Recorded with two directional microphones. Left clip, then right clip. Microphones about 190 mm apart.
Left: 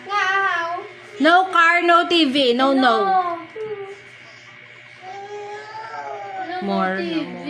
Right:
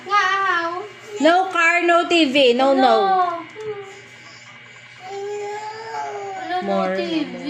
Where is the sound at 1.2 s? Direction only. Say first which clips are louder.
Left 1 dB; 10° left (ahead or behind).